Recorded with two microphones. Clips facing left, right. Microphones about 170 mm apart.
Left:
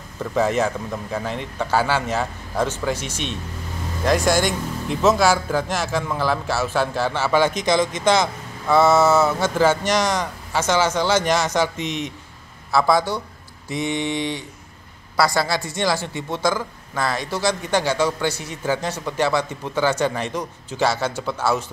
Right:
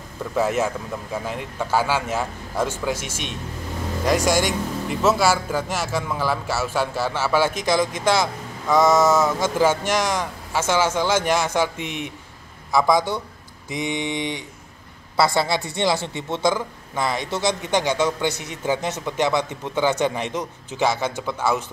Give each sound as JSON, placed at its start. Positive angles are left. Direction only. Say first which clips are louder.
{"t": 0.4, "sound": "a man's voice", "louder": "left 2 dB", "side_deg": -10}
{"t": 8.6, "sound": "a sound", "louder": "left 1 dB", "side_deg": 10}
{"t": 9.4, "sound": "a man's voice", "louder": "left 1 dB", "side_deg": -10}